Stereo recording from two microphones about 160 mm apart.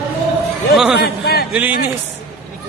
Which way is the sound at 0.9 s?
80° left.